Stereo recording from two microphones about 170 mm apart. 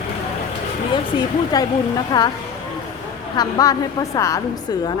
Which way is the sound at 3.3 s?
20° left (ahead or behind).